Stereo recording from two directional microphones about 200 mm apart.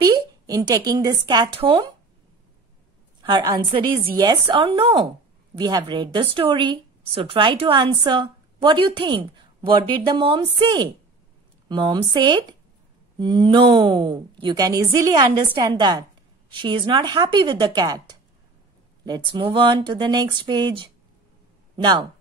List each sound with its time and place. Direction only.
0.0 s speech: 20° right (ahead or behind)
3.2 s speech: 20° right (ahead or behind)